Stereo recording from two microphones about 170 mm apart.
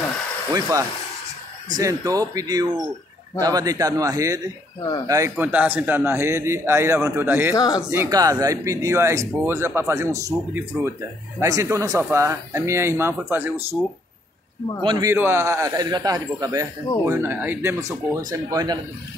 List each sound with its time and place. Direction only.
1.7 s speech: 20° right (ahead or behind)
5.3 s speech: 10° right (ahead or behind)
7.5 s speech: 20° left (ahead or behind)
7.9 s speech: 20° right (ahead or behind)
14.8 s speech: 25° right (ahead or behind)
15.1 s speech: 15° right (ahead or behind)